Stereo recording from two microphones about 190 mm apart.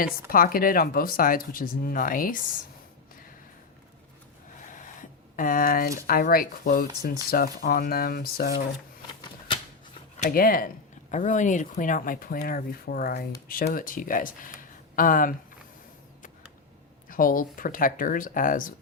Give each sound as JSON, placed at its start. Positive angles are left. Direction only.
{"t": 0.3, "sound": "speech", "side_deg": 50}
{"t": 5.4, "sound": "speech", "side_deg": 45}
{"t": 10.2, "sound": "speech", "side_deg": 50}
{"t": 17.1, "sound": "speech", "side_deg": 45}